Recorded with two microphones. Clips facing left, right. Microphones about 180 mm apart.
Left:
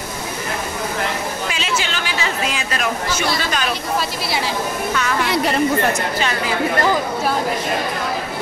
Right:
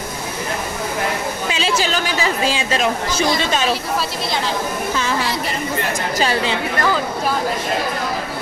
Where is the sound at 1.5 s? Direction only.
35° right (ahead or behind).